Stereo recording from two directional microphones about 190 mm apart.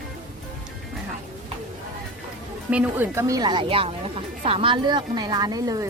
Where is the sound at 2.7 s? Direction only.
10° right (ahead or behind).